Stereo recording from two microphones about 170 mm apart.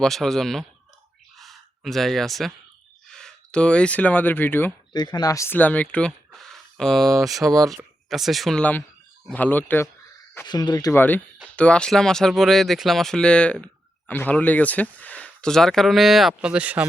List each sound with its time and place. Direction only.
0.0 s speech: centre (ahead or behind)
1.4 s sigh: centre (ahead or behind)
3.1 s speech: 5° left (ahead or behind)
4.9 s speech: 25° left (ahead or behind); by 7.1 s centre (ahead or behind)
7.4 s speech: 20° right (ahead or behind)
8.1 s speech: centre (ahead or behind)
10.4 s speech: 25° left (ahead or behind)
11.4 s speech: 5° left (ahead or behind)